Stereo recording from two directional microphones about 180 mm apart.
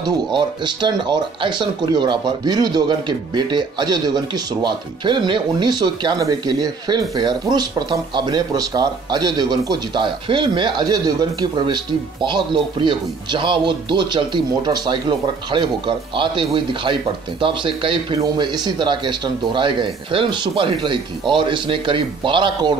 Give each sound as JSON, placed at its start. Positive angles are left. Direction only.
{"t": 0.0, "sound": "speech", "side_deg": -25}